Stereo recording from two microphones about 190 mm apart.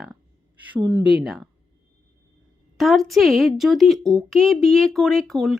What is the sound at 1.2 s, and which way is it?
Speech, centre (ahead or behind).